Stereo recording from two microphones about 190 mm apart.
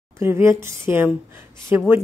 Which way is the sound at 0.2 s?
15° right (ahead or behind).